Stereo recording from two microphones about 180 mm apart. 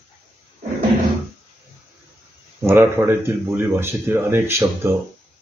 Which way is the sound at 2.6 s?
15° right (ahead or behind).